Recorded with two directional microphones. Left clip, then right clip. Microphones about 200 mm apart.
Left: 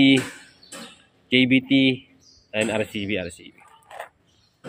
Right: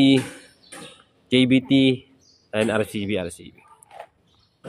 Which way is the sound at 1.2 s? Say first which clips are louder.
Even; 25° right (ahead or behind).